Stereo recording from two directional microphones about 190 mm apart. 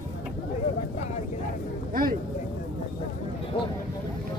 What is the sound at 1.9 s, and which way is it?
Speech, 50° right (ahead or behind).